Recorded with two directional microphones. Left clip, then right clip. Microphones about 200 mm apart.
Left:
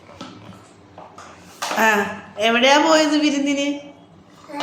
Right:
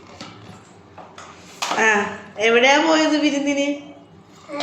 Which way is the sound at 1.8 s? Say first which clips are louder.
Left 1 dB; 20° left (ahead or behind).